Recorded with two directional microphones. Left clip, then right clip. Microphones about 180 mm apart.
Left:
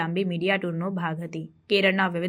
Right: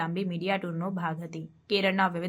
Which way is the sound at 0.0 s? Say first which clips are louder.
Left 5 dB; 15° left (ahead or behind).